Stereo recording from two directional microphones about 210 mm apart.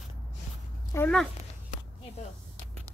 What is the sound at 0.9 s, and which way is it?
Cat, 15° left (ahead or behind).